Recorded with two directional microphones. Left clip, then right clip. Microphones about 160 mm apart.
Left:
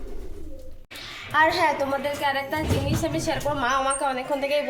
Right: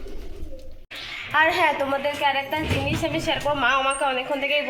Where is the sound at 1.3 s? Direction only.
5° left (ahead or behind).